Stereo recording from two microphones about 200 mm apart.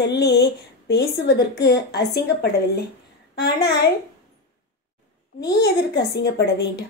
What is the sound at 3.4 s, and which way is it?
Speech, 55° left (ahead or behind).